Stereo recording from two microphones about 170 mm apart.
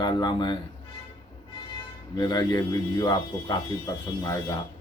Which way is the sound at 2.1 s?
25° left (ahead or behind).